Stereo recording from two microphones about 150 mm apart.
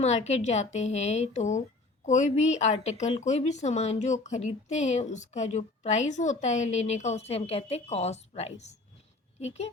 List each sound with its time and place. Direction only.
0.0 s speech: 50° left (ahead or behind)